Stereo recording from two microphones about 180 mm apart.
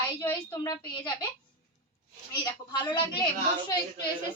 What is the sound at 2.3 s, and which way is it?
Speech, 20° left (ahead or behind).